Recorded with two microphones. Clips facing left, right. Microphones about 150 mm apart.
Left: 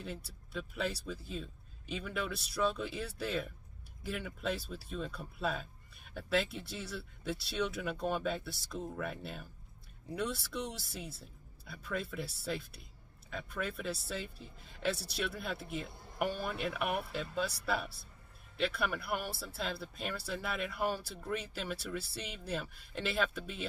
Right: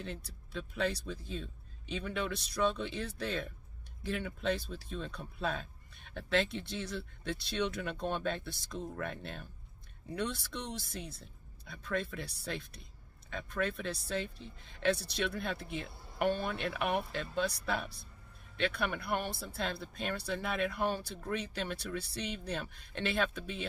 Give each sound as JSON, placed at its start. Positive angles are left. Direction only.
{"t": 0.0, "sound": "speech", "side_deg": 5}